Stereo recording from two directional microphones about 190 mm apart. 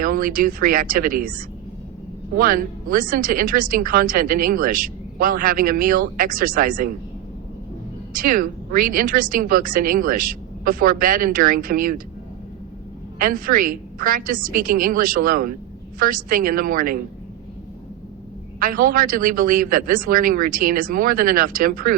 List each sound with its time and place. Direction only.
0.0 s a woman's voice: 45° right (ahead or behind)
2.4 s a woman's voice: 45° right (ahead or behind)
8.2 s a woman's voice: 50° right (ahead or behind)
13.1 s a woman's voice: 50° right (ahead or behind)
18.6 s a woman's voice: 45° right (ahead or behind)